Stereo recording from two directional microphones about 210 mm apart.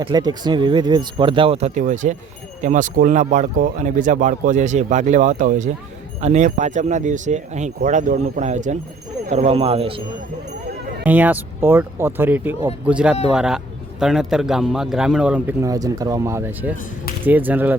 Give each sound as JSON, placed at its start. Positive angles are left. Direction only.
{"t": 0.0, "sound": "speech", "side_deg": -20}
{"t": 11.0, "sound": "a man's voice", "side_deg": -10}
{"t": 15.6, "sound": "speech", "side_deg": -15}